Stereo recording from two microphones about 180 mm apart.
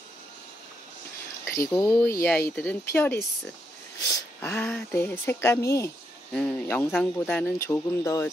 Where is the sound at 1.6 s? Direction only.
15° left (ahead or behind).